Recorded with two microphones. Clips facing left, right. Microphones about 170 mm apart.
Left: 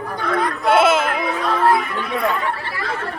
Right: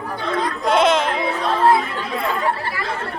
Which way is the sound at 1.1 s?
30° right (ahead or behind).